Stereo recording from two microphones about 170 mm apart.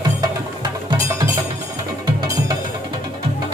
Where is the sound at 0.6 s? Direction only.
25° right (ahead or behind).